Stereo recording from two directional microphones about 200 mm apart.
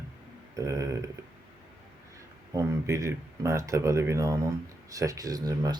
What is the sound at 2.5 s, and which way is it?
Speech, 15° right (ahead or behind).